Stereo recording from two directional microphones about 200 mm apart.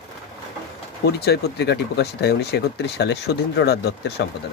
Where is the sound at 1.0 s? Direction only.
55° left (ahead or behind).